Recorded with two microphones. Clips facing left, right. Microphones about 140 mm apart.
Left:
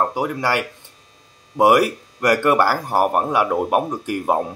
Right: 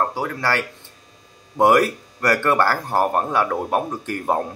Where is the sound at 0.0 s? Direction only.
15° left (ahead or behind).